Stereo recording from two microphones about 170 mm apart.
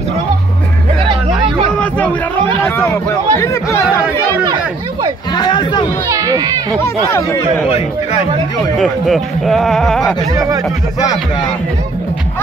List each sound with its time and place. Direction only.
2.8 s speech: 15° left (ahead or behind)
5.3 s speech: 25° left (ahead or behind)
6.1 s a child's voice: 20° right (ahead or behind)
8.7 s speech: centre (ahead or behind)